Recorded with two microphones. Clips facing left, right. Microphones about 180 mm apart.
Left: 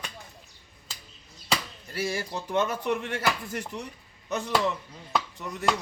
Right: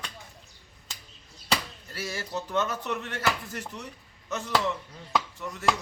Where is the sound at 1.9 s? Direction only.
10° left (ahead or behind).